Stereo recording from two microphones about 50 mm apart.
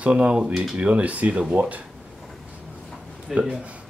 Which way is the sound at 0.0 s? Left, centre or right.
Right.